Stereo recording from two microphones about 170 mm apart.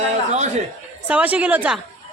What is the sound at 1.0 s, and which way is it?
Speech, 10° right (ahead or behind).